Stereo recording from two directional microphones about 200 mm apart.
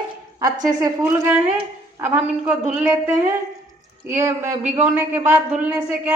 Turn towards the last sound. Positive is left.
turn(degrees=-5)  # may be behind; listen again after turning